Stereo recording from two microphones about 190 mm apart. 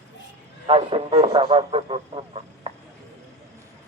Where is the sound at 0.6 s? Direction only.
30° right (ahead or behind).